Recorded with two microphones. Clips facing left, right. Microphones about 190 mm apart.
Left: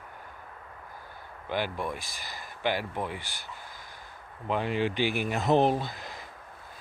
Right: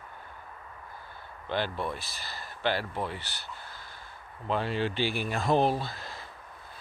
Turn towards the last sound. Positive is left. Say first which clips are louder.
# left 2 dB
turn(degrees=20)  # may be behind; listen again after turning